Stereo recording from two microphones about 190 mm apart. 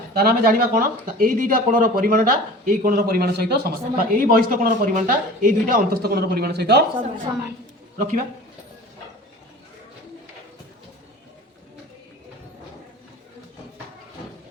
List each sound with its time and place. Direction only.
0.1 s speech: 55° right (ahead or behind)
7.9 s speech: 45° right (ahead or behind)